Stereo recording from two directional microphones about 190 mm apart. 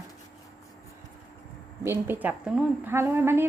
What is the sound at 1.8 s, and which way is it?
A woman's voice, 10° right (ahead or behind).